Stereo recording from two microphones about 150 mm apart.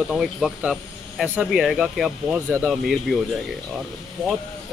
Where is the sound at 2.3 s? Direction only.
15° right (ahead or behind).